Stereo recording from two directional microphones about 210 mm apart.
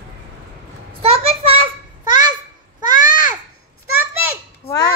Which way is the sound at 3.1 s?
20° right (ahead or behind).